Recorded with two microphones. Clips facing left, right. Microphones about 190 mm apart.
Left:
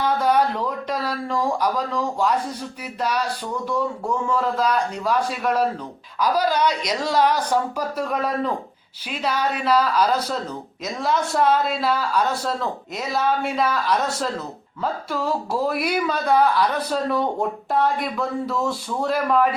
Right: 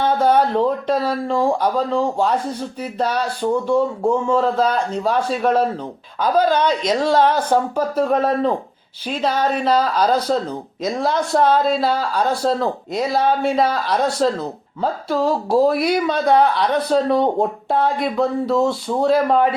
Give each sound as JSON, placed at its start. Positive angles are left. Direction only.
{"t": 0.0, "sound": "speech", "side_deg": -30}